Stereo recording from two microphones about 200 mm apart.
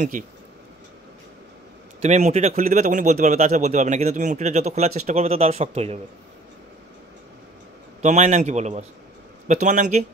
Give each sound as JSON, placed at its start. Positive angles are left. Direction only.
{"t": 0.2, "sound": "speech", "side_deg": -40}
{"t": 2.0, "sound": "speech", "side_deg": -35}
{"t": 8.0, "sound": "speech", "side_deg": -35}